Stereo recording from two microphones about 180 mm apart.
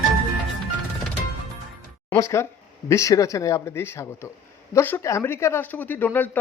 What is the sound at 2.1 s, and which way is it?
Speech, 15° left (ahead or behind).